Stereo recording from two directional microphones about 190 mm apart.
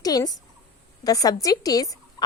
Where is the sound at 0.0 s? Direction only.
20° left (ahead or behind).